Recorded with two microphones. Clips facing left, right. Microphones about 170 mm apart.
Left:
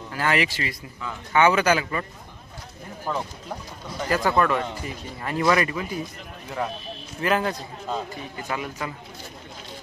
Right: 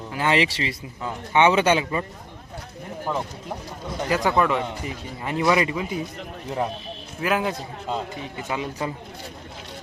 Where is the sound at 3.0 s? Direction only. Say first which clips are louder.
Right 1 dB; 15° right (ahead or behind).